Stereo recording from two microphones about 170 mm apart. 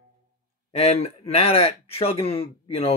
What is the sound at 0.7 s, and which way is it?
Speech, 35° left (ahead or behind).